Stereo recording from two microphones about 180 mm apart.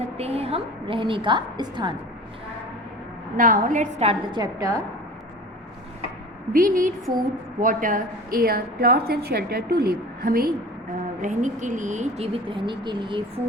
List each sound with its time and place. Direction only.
0.2 s a woman's voice: 35° right (ahead or behind)
3.3 s speech: 45° right (ahead or behind); by 4.8 s 20° right (ahead or behind)
6.5 s a woman's voice: 50° right (ahead or behind)
11.2 s speech: 45° right (ahead or behind); by 13.4 s 25° right (ahead or behind)